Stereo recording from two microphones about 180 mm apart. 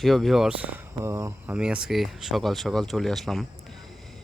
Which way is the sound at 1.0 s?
15° right (ahead or behind).